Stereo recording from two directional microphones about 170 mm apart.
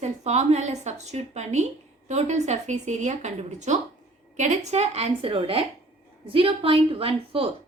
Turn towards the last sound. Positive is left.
turn(degrees=-35)  # may be behind; listen again after turning